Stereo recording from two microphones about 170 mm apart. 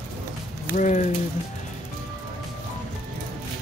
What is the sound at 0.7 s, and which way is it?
Speech, 45° left (ahead or behind).